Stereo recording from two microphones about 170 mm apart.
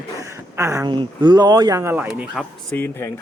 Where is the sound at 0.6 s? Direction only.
15° right (ahead or behind).